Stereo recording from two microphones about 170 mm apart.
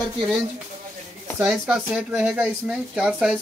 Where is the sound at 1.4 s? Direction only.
5° right (ahead or behind).